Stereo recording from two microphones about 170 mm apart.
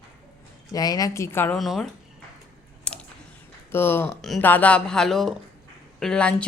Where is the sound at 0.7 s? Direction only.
20° left (ahead or behind).